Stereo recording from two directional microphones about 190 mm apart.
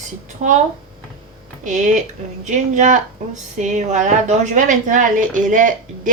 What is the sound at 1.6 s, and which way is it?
A woman's voice, 40° right (ahead or behind).